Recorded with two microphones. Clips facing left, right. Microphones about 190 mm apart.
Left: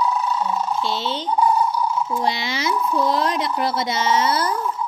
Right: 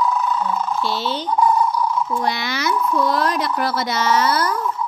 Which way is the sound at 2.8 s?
30° left (ahead or behind).